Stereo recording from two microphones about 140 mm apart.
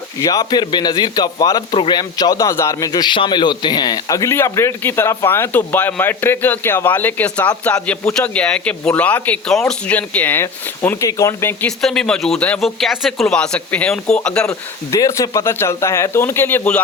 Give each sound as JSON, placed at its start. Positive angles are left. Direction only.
{"t": 0.2, "sound": "a man's voice", "side_deg": 25}
{"t": 11.8, "sound": "speech", "side_deg": 5}
{"t": 14.9, "sound": "a man's voice", "side_deg": 25}